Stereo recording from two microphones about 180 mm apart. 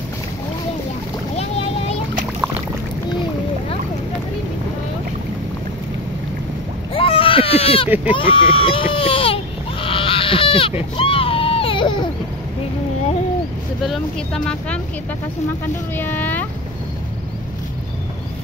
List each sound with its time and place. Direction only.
1.3 s boat: 35° left (ahead or behind)
6.9 s baby cry: 30° left (ahead or behind)
7.9 s speech: 10° right (ahead or behind)
8.2 s a sound: 30° left (ahead or behind)
11.0 s baby cry: 30° left (ahead or behind)
13.8 s speech: 5° left (ahead or behind)
16.0 s speech: 10° left (ahead or behind)